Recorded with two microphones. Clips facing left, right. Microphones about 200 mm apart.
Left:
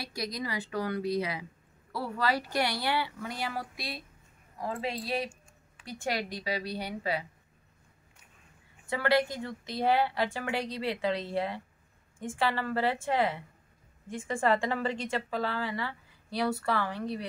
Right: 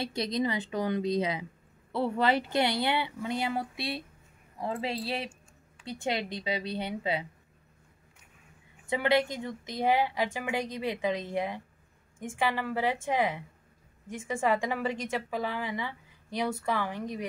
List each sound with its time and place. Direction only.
0.0 s speech: 25° right (ahead or behind)
8.8 s a woman's voice: 20° right (ahead or behind)